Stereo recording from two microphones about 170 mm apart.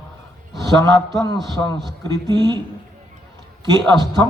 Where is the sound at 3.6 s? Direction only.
25° right (ahead or behind).